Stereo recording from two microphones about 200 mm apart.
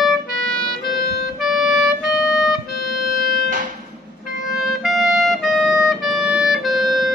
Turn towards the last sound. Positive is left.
turn(degrees=0)  # may be behind; listen again after turning